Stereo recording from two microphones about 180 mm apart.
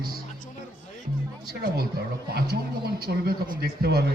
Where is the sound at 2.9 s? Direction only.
60° right (ahead or behind).